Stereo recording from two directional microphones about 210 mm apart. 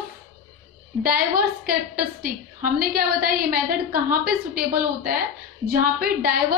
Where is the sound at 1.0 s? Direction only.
45° right (ahead or behind).